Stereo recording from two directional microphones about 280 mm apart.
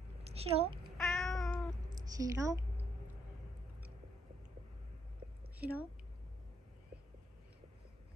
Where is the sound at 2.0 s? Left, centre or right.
Centre.